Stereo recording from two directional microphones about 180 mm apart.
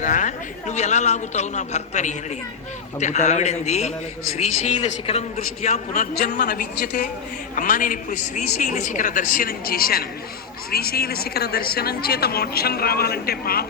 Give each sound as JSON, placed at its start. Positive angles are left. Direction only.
{"t": 0.0, "sound": "a man's voice", "side_deg": 45}
{"t": 5.9, "sound": "a man's voice", "side_deg": 55}